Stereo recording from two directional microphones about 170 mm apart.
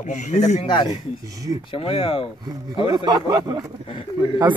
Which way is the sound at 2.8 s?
25° right (ahead or behind).